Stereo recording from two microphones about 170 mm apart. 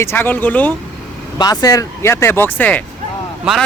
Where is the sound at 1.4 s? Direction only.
25° left (ahead or behind).